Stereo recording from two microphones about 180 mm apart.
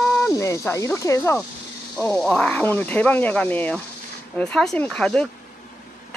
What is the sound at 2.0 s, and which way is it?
A woman's voice, 5° left (ahead or behind).